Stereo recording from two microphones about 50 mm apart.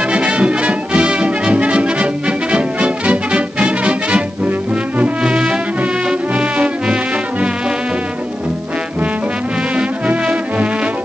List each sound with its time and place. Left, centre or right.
0.0 s brass instrument: right
4.5 s music: right
5.2 s music: centre
9.8 s music: right